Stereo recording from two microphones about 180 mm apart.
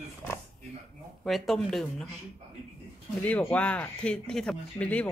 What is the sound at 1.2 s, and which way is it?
Speech, centre (ahead or behind).